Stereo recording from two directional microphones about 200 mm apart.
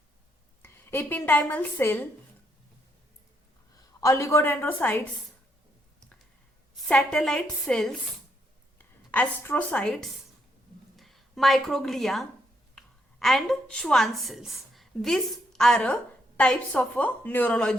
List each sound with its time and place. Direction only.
0.6 s a woman's voice: 10° left (ahead or behind)
4.0 s a woman's voice: 15° left (ahead or behind)
6.8 s a woman's voice: 5° left (ahead or behind)